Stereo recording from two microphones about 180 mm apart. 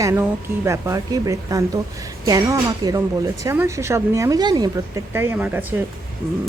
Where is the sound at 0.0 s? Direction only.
15° right (ahead or behind).